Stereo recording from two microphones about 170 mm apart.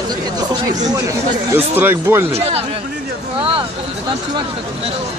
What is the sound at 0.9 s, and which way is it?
Speech, 15° right (ahead or behind).